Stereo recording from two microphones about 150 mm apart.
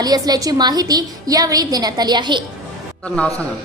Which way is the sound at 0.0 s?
25° right (ahead or behind).